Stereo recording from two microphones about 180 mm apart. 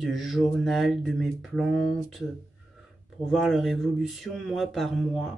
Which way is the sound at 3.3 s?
Centre (ahead or behind).